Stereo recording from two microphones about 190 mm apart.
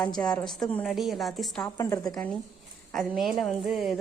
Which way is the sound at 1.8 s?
20° left (ahead or behind).